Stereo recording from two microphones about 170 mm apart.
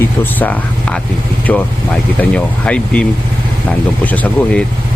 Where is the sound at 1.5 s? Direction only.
10° left (ahead or behind).